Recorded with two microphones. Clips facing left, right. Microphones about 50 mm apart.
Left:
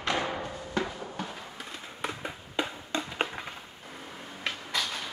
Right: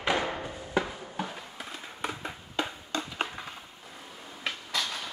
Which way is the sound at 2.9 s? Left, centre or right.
Left.